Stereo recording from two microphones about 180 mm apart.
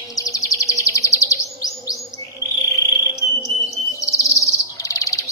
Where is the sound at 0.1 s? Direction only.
20° left (ahead or behind).